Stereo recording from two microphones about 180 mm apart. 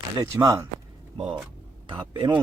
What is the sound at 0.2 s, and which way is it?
Speech, 20° right (ahead or behind).